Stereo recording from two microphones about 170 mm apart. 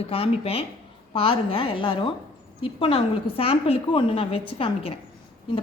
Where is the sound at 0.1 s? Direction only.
35° left (ahead or behind).